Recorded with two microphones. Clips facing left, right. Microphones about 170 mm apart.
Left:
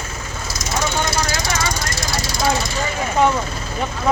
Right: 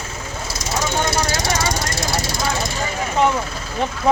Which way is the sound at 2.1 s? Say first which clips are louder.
Left 5 dB; 60° right (ahead or behind).